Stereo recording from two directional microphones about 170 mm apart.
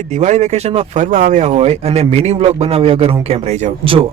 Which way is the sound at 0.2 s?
40° right (ahead or behind).